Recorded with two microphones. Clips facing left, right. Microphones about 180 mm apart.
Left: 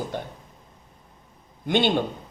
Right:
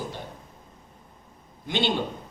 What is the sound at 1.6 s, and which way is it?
Speech, 55° left (ahead or behind).